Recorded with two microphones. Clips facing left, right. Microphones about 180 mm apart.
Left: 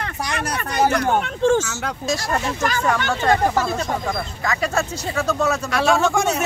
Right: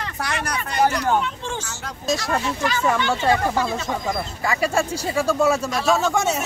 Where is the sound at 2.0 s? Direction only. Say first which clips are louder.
Right 1 dB; centre (ahead or behind).